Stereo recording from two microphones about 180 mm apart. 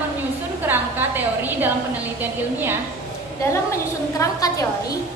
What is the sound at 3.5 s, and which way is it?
A woman's voice, 15° left (ahead or behind).